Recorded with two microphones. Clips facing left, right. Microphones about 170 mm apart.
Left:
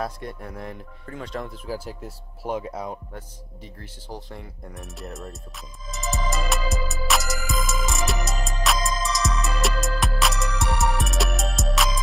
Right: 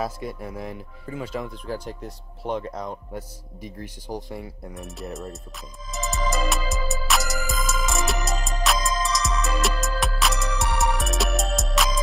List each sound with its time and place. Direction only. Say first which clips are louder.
0.0 s speech: right 2 dB; 5° right (ahead or behind)
3.1 s speech: right 4 dB; 15° right (ahead or behind)
5.9 s music: right 1 dB; centre (ahead or behind)